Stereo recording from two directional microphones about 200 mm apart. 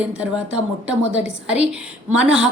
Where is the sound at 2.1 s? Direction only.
5° right (ahead or behind).